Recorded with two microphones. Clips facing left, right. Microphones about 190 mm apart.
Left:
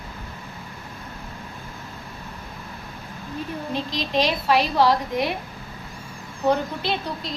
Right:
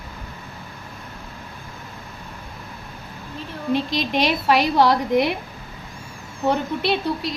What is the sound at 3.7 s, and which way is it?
A woman's voice, 65° right (ahead or behind).